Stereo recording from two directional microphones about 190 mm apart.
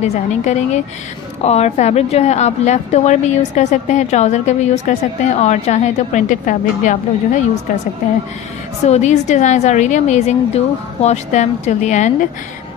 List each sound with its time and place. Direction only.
0.0 s a woman's voice: 35° left (ahead or behind)
8.8 s a woman's voice: 35° left (ahead or behind)